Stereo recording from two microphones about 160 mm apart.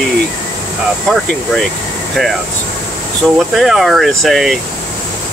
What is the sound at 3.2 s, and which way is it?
Speech, 5° right (ahead or behind).